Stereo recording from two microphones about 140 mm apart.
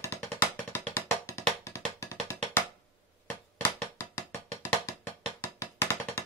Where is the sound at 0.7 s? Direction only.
20° left (ahead or behind).